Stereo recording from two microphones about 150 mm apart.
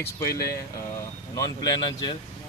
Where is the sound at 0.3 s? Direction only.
90° left.